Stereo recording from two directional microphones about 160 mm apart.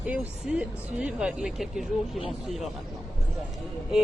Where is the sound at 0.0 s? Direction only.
5° right (ahead or behind).